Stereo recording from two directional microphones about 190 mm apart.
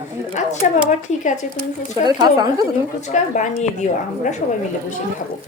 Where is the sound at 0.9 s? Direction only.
40° left (ahead or behind).